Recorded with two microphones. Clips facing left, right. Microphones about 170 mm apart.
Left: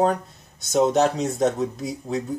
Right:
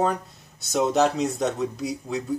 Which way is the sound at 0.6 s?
Centre (ahead or behind).